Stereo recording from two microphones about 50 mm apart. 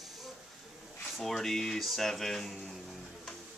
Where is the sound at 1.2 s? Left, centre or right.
Centre.